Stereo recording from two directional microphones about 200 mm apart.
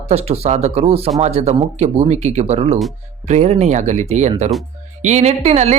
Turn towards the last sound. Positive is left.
turn(degrees=-35)  # may be behind; listen again after turning